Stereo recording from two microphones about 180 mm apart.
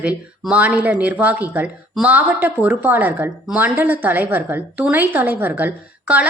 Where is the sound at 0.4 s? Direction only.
5° right (ahead or behind).